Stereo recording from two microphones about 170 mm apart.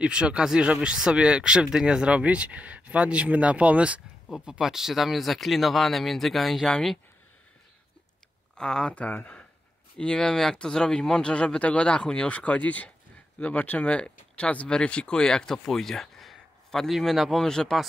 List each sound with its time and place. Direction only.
0.0 s speech: 5° right (ahead or behind)
8.5 s speech: 5° left (ahead or behind)